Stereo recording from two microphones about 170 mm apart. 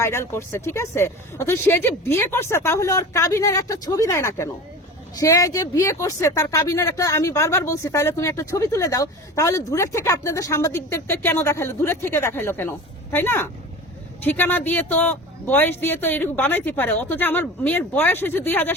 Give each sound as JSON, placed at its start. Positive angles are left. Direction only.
{"t": 0.0, "sound": "speech", "side_deg": 15}